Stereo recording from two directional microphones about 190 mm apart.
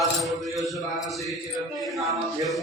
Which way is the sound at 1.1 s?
Centre (ahead or behind).